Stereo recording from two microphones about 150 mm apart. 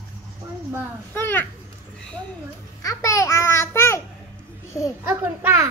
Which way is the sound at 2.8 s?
20° left (ahead or behind).